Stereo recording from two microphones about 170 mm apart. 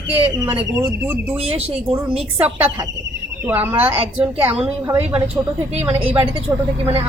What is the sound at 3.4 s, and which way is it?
A woman's voice, 10° right (ahead or behind).